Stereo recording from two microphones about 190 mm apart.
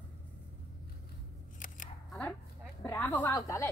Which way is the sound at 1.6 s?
45° left (ahead or behind).